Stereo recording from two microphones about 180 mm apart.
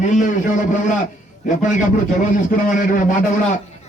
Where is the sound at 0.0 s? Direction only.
45° left (ahead or behind).